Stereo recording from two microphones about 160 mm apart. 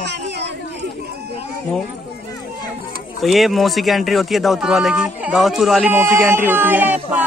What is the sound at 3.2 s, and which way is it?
Speech, centre (ahead or behind).